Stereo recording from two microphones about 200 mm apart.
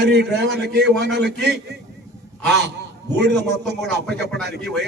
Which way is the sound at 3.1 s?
55° right (ahead or behind).